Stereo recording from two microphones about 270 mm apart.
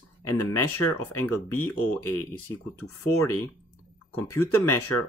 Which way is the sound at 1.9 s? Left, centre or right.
Centre.